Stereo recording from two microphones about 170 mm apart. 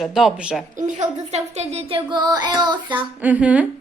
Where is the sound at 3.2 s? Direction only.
10° right (ahead or behind).